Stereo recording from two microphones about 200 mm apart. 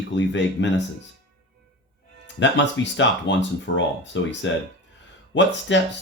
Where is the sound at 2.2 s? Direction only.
65° left (ahead or behind).